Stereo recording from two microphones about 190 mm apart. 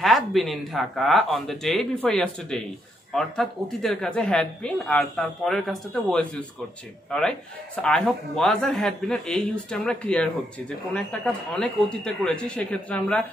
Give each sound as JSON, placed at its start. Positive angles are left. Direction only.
{"t": 0.0, "sound": "a woman's voice", "side_deg": 0}